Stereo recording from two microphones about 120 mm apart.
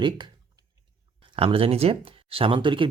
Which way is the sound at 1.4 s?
50° right (ahead or behind).